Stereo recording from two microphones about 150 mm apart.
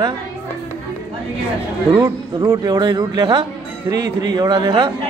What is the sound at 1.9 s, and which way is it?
Speech, 25° right (ahead or behind).